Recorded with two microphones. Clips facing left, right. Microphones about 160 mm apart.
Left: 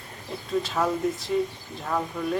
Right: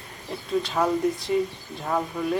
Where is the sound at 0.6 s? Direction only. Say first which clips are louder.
Right 3 dB; centre (ahead or behind).